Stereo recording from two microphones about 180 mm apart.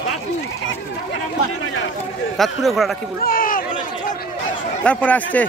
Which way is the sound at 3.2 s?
50° left (ahead or behind).